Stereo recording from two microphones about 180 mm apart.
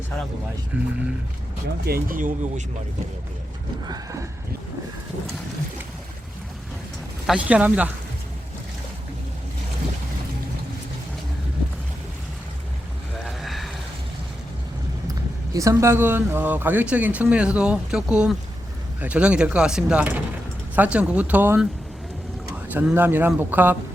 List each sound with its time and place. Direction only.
0.7 s speech: 5° right (ahead or behind)
1.8 s speech: 55° right (ahead or behind)
3.8 s horse: 20° right (ahead or behind)
7.3 s speech: 5° right (ahead or behind)
13.2 s a sound: centre (ahead or behind)
15.5 s speech: 15° right (ahead or behind)